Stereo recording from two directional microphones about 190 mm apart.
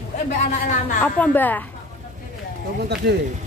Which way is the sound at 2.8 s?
60° right (ahead or behind).